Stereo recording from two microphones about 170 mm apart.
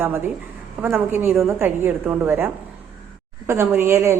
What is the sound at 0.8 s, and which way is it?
Speech, 15° right (ahead or behind).